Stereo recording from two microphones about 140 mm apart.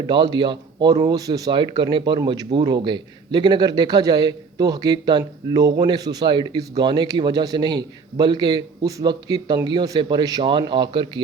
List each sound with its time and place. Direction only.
0.1 s speech: 35° right (ahead or behind)